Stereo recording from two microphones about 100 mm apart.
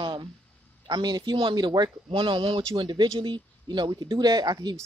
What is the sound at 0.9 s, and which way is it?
A woman's voice, 45° right (ahead or behind).